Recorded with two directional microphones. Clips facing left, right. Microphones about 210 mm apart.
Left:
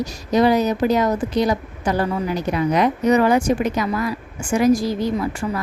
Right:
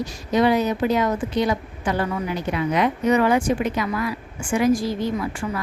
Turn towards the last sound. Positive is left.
turn(degrees=40)  # may be behind; listen again after turning